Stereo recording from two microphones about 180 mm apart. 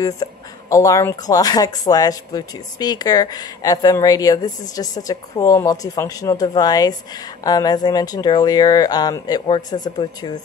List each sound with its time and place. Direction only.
0.0 s speech: 20° left (ahead or behind)